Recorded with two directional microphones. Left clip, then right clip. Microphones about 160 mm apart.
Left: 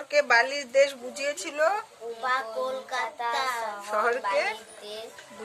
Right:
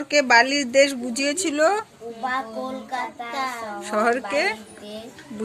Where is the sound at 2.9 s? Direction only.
25° left (ahead or behind).